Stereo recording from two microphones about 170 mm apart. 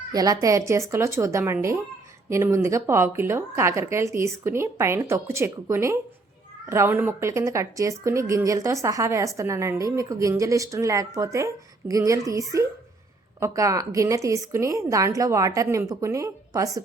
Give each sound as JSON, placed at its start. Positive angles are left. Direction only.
{"t": 0.1, "sound": "a woman's voice", "side_deg": -20}